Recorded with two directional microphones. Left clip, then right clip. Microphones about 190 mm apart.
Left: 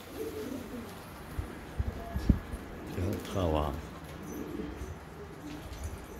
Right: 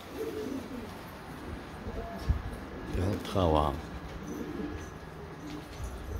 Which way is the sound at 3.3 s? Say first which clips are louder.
Right 5 dB; 20° right (ahead or behind).